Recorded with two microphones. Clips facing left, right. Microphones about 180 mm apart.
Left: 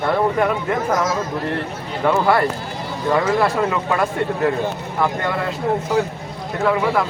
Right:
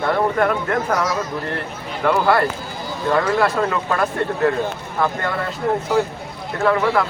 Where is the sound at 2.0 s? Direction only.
Centre (ahead or behind).